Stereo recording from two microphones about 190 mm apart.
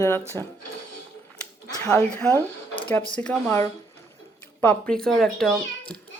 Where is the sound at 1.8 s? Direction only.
5° left (ahead or behind).